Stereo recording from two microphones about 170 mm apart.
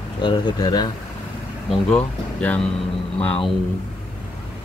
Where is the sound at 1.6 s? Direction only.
10° left (ahead or behind).